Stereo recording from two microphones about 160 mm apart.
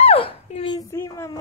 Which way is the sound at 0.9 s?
20° left (ahead or behind).